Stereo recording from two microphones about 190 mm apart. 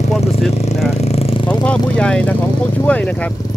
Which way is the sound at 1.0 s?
30° left (ahead or behind).